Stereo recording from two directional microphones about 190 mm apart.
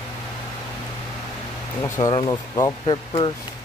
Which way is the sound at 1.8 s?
20° left (ahead or behind).